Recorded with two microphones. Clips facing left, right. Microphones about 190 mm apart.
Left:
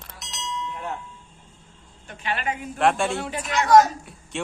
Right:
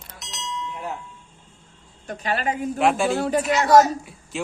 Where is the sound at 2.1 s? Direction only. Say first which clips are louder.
Right 4 dB; 40° right (ahead or behind).